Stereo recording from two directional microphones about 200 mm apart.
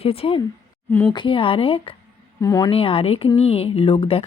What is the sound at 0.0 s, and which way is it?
Speech, 30° left (ahead or behind).